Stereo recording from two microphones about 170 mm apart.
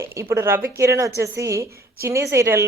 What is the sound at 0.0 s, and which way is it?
A woman's voice, 15° right (ahead or behind).